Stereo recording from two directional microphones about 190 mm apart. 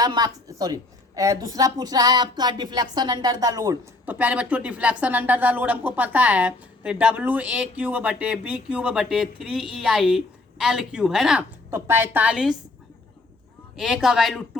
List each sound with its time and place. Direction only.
0.0 s a woman's voice: 20° right (ahead or behind); by 12.5 s 5° right (ahead or behind)
13.7 s a man's voice: centre (ahead or behind)